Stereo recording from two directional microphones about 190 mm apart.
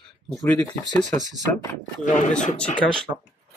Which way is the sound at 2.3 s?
5° left (ahead or behind).